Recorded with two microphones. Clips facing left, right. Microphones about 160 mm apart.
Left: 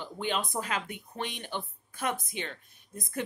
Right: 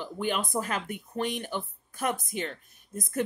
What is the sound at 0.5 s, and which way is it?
Speech, 45° right (ahead or behind).